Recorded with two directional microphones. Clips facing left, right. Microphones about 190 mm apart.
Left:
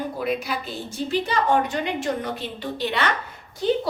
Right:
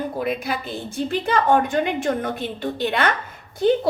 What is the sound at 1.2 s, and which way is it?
A woman's voice, 55° right (ahead or behind).